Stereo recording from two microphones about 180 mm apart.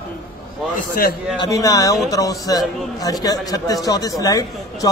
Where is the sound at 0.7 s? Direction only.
55° left (ahead or behind).